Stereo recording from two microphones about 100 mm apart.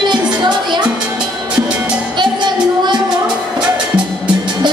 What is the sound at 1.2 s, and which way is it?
Music, 10° right (ahead or behind).